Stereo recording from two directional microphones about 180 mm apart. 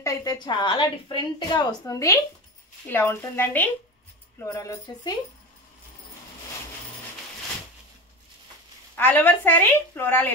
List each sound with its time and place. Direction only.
0.0 s a woman's voice: 20° left (ahead or behind)
8.9 s a woman's voice: 10° left (ahead or behind)